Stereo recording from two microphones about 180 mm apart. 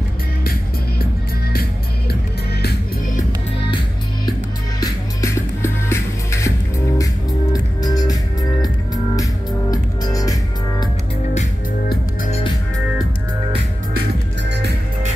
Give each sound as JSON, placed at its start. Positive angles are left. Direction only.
{"t": 0.4, "sound": "music", "side_deg": 55}
{"t": 4.3, "sound": "music", "side_deg": 20}
{"t": 7.8, "sound": "music", "side_deg": 20}